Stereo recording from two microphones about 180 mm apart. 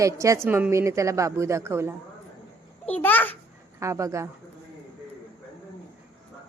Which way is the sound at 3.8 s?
15° right (ahead or behind).